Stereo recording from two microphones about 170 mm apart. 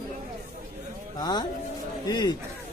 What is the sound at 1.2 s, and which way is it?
Speech, 25° left (ahead or behind).